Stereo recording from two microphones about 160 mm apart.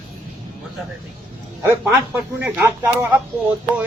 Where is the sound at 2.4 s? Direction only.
10° right (ahead or behind).